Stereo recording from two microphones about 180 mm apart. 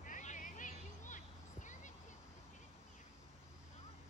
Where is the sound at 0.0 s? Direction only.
45° left (ahead or behind).